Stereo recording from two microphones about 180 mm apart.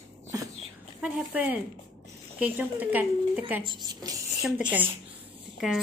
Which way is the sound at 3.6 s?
25° right (ahead or behind).